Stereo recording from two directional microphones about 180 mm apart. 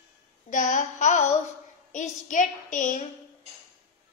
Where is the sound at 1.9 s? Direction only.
45° left (ahead or behind).